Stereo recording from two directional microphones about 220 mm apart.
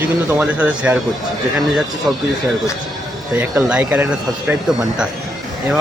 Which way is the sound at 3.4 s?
5° right (ahead or behind).